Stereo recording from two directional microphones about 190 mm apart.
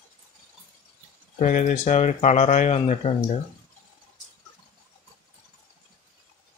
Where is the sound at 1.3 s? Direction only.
40° left (ahead or behind).